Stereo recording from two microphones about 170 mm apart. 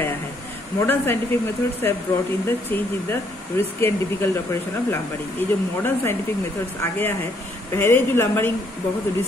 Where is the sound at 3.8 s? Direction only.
15° left (ahead or behind).